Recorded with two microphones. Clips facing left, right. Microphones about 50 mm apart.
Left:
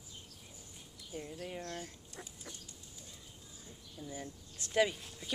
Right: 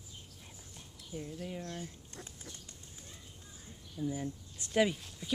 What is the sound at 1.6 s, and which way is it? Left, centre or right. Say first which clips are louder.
Speech: right 1 dB; left.